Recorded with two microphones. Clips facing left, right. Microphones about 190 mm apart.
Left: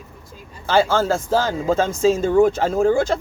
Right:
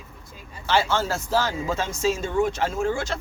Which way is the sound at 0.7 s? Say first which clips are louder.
Left 6 dB; 50° left (ahead or behind).